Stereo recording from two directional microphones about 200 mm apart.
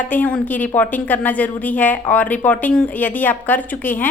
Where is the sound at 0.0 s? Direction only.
10° left (ahead or behind).